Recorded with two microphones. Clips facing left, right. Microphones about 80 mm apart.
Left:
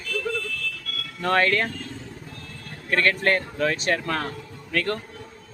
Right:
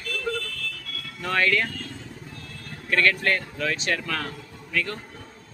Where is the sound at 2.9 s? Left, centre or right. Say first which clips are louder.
Left 1 dB; left.